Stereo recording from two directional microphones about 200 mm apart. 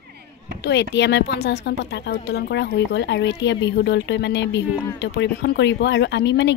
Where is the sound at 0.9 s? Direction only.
60° left (ahead or behind).